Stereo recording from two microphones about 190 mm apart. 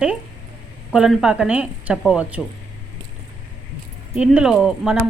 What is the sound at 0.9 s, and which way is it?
Speech, centre (ahead or behind).